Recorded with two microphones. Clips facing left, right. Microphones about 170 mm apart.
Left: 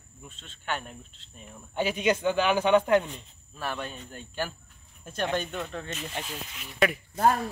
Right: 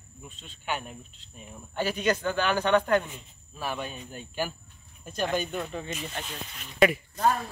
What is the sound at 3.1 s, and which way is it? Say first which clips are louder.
Speech: left 1 dB; 5° right (ahead or behind).